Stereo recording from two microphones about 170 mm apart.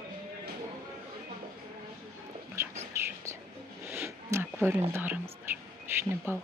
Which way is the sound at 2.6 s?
15° right (ahead or behind).